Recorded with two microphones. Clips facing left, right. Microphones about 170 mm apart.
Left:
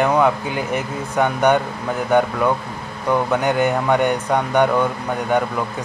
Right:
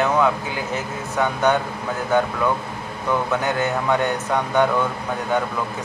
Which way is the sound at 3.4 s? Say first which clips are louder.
Left 4 dB; 15° left (ahead or behind).